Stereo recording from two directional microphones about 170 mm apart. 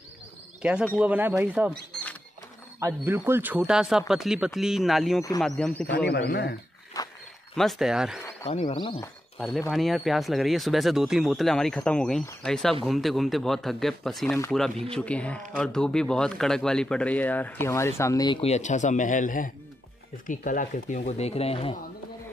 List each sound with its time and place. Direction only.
0.6 s a man's voice: 5° right (ahead or behind)
2.8 s a man's voice: 15° right (ahead or behind); by 5.9 s 10° left (ahead or behind)
6.0 s speech: 80° left
7.0 s dog: 20° left (ahead or behind)
7.5 s speech: centre (ahead or behind)
8.2 s insect: 15° left (ahead or behind)
8.5 s speech: 30° left (ahead or behind)
9.7 s speech: centre (ahead or behind); by 21.7 s 35° left (ahead or behind)